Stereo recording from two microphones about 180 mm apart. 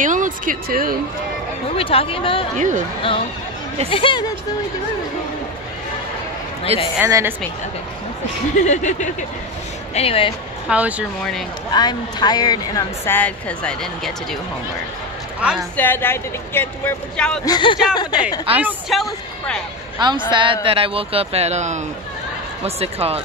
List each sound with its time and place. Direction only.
0.0 s speech: 45° right (ahead or behind)
1.8 s speech: 30° left (ahead or behind)
2.5 s speech: 45° right (ahead or behind)
3.9 s speech: 25° left (ahead or behind)
7.1 s speech: 15° right (ahead or behind)
8.5 s speech: 40° left (ahead or behind)
9.9 s speech: 30° left (ahead or behind)
10.7 s speech: 5° right (ahead or behind)
11.7 s speech: 25° left (ahead or behind); by 14.1 s 5° left (ahead or behind)
15.7 s speech: 10° left (ahead or behind)
17.5 s speech: 25° left (ahead or behind)
18.6 s speech: 5° right (ahead or behind)
20.0 s speech: 25° right (ahead or behind)